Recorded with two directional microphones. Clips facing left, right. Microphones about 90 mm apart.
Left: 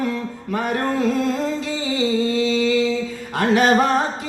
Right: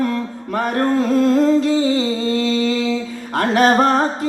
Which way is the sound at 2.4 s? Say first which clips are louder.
Right 1 dB; 45° right (ahead or behind).